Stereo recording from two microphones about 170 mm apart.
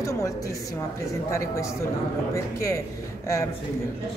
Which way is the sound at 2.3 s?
15° left (ahead or behind).